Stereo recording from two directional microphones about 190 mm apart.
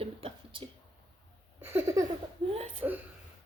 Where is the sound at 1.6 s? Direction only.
15° right (ahead or behind).